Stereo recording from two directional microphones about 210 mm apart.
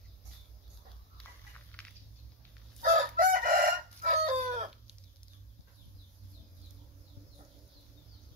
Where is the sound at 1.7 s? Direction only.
10° left (ahead or behind).